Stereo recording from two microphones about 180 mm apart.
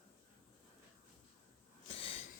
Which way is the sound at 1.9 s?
35° left (ahead or behind).